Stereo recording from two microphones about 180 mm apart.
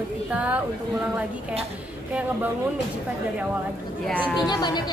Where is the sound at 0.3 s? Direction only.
5° right (ahead or behind).